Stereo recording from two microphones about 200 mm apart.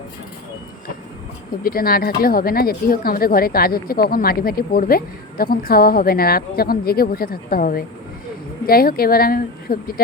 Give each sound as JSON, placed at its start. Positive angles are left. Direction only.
{"t": 1.6, "sound": "speech", "side_deg": 45}